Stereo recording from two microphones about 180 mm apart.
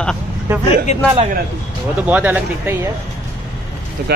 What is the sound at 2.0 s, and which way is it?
Speech, 10° right (ahead or behind).